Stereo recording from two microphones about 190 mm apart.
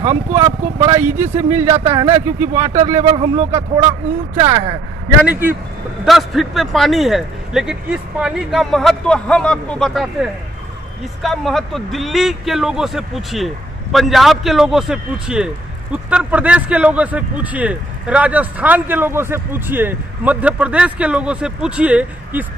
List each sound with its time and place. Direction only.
0.0 s speech: 35° right (ahead or behind)
1.0 s a man's voice: 10° right (ahead or behind)
1.7 s speech: 30° right (ahead or behind)
4.5 s speech: 20° right (ahead or behind)
5.2 s a man's voice: 10° right (ahead or behind)
11.2 s a man's voice: centre (ahead or behind)